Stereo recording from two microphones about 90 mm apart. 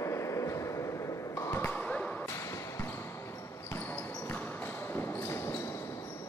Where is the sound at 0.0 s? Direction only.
35° left (ahead or behind).